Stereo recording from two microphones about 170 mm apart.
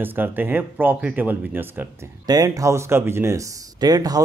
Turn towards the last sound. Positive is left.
turn(degrees=-20)  # may be behind; listen again after turning